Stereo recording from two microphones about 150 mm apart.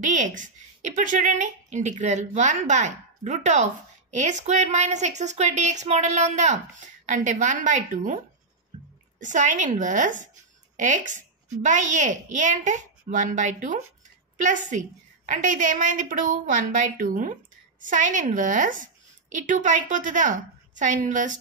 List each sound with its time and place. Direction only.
0.1 s a woman's voice: 55° right (ahead or behind)
9.2 s a woman's voice: 55° right (ahead or behind)